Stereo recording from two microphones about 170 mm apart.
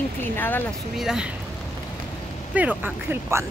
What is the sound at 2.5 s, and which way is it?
Speech, 10° right (ahead or behind).